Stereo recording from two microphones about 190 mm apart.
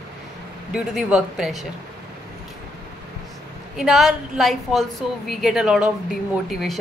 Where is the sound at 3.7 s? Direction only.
Centre (ahead or behind).